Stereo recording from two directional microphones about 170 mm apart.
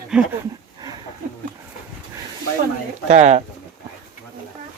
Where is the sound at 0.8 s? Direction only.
20° right (ahead or behind).